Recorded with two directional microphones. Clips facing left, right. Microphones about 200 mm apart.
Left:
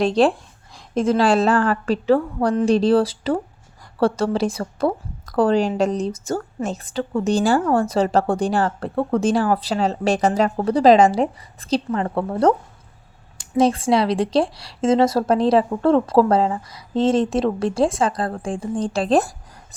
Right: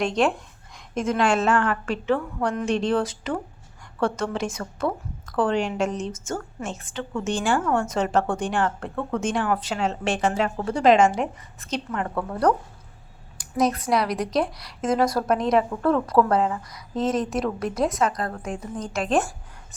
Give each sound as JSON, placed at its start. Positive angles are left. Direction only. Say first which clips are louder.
{"t": 0.0, "sound": "a woman's voice", "louder": "left 5 dB", "side_deg": 35}